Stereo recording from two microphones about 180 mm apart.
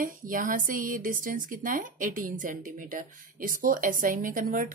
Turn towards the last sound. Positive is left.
turn(degrees=-50)  # may be behind; listen again after turning